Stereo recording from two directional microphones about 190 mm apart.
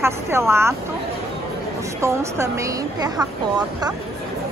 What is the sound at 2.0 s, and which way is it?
A woman's voice, 15° right (ahead or behind).